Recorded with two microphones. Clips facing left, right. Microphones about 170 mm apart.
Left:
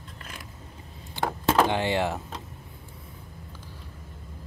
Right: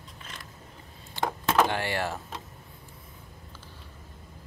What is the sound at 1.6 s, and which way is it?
Speech, 20° left (ahead or behind).